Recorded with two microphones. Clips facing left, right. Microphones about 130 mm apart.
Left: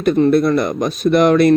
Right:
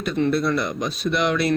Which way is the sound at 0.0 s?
50° left (ahead or behind).